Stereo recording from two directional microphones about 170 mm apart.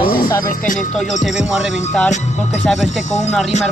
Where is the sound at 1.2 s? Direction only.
Centre (ahead or behind).